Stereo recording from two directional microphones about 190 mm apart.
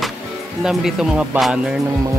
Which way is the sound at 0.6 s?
Centre (ahead or behind).